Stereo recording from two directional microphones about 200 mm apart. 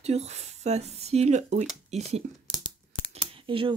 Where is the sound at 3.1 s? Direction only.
25° right (ahead or behind).